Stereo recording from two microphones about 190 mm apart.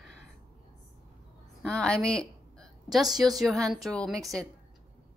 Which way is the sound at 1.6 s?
5° left (ahead or behind).